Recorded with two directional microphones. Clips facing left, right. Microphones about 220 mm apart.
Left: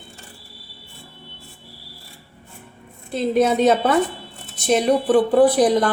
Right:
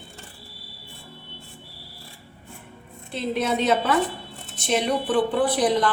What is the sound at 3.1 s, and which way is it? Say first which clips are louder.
A woman's voice: left 7 dB; 45° left (ahead or behind).